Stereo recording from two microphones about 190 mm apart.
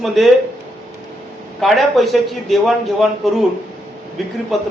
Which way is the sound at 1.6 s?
Centre (ahead or behind).